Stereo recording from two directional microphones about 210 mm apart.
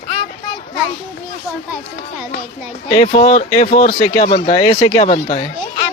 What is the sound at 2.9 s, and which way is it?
Speech, 30° left (ahead or behind).